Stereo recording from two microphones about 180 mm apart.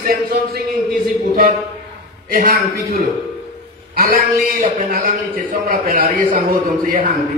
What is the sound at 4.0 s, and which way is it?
A man's voice, 55° right (ahead or behind).